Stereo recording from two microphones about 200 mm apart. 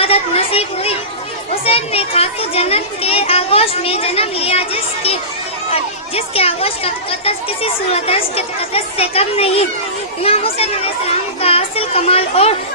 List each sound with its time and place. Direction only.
0.0 s speech: 30° left (ahead or behind)